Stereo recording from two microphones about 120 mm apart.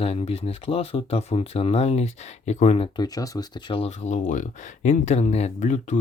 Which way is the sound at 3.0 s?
30° left (ahead or behind).